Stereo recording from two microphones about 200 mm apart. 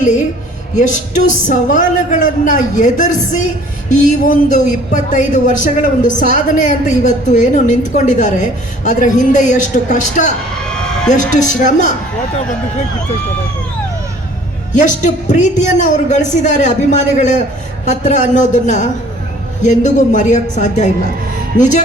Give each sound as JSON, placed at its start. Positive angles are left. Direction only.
{"t": 0.8, "sound": "speech", "side_deg": 40}
{"t": 10.7, "sound": "a sound", "side_deg": 5}
{"t": 11.4, "sound": "speech", "side_deg": 40}
{"t": 14.7, "sound": "speech", "side_deg": 40}